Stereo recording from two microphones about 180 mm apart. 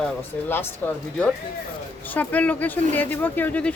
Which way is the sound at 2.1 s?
10° left (ahead or behind).